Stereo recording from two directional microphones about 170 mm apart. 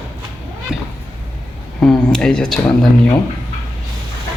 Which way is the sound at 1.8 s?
5° left (ahead or behind).